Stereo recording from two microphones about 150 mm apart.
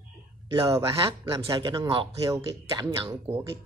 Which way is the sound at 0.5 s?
20° right (ahead or behind).